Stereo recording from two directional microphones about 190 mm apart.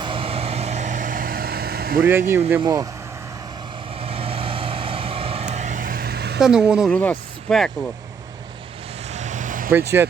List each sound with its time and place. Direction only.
0.0 s vehicle: 30° right (ahead or behind); by 2.0 s 50° right (ahead or behind)
2.0 s speech: 10° right (ahead or behind)
4.0 s vehicle: 30° right (ahead or behind); by 6.4 s 60° right (ahead or behind)
6.4 s speech: 5° right (ahead or behind)
6.9 s speech: 10° left (ahead or behind)
9.1 s vehicle: 40° right (ahead or behind)
9.7 s speech: 15° right (ahead or behind)